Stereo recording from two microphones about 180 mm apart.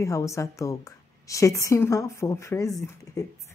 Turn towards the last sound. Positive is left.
turn(degrees=20)  # may be behind; listen again after turning